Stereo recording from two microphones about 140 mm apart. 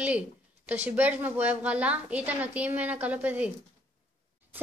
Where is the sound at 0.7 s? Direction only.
10° right (ahead or behind).